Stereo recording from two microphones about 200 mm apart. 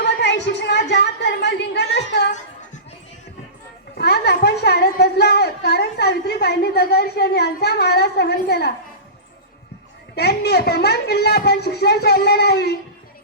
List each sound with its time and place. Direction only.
0.0 s a sound: 60° left (ahead or behind)
3.9 s a woman's voice: 55° left (ahead or behind)
10.2 s speech: 55° left (ahead or behind)